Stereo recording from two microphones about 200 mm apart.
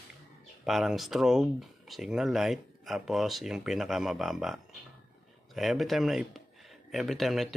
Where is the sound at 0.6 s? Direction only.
Centre (ahead or behind).